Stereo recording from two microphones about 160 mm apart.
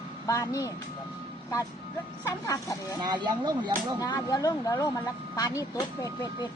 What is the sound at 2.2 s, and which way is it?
Speech, 20° left (ahead or behind).